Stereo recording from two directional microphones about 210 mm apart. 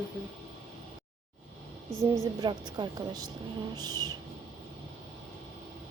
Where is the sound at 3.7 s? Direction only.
20° right (ahead or behind).